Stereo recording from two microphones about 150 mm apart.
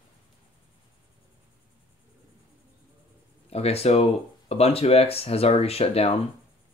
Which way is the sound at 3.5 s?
40° left (ahead or behind).